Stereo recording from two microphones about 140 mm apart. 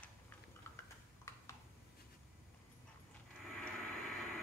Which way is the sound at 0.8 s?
20° left (ahead or behind).